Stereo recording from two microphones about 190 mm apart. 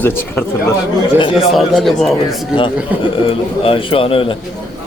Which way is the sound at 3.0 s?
25° left (ahead or behind).